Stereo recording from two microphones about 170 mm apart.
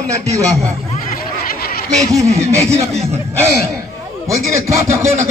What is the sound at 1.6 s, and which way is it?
Snicker, 60° left (ahead or behind).